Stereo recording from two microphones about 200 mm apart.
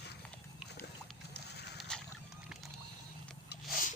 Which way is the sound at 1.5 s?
55° left (ahead or behind).